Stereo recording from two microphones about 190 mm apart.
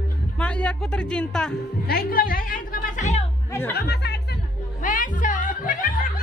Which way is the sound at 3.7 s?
60° left (ahead or behind).